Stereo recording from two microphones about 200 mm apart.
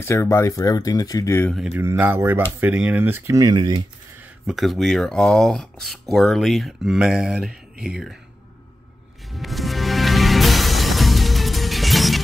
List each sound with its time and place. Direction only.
0.0 s speech: 15° left (ahead or behind)
1.7 s speech: 10° right (ahead or behind)
4.2 s speech: centre (ahead or behind)
9.3 s music: centre (ahead or behind)